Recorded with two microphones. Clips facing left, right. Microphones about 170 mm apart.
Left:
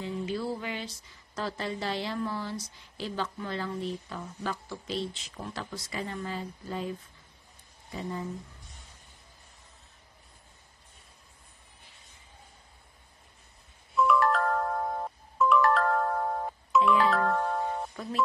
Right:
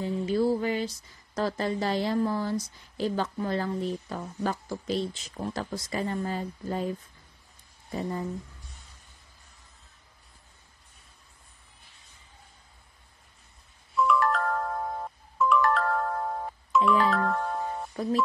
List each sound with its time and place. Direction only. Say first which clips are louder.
0.0 s a sound: right 7 dB; 40° right (ahead or behind)
1.3 s a woman's voice: right 6 dB; 45° right (ahead or behind)
7.9 s a woman's voice: right 4 dB; 45° right (ahead or behind)
13.9 s music: even; centre (ahead or behind)
18.0 s speech: right 8 dB; 35° right (ahead or behind)